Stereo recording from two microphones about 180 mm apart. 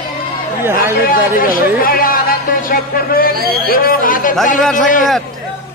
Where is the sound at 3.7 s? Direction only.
55° left (ahead or behind).